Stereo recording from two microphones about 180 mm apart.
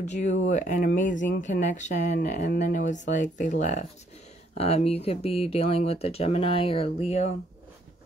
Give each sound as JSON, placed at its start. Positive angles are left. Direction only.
{"t": 0.0, "sound": "speech", "side_deg": 40}